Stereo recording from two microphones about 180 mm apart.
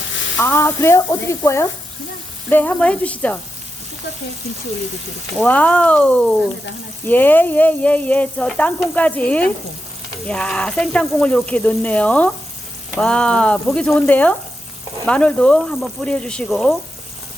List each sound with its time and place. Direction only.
0.3 s speech: 15° left (ahead or behind)
5.4 s speech: 10° left (ahead or behind)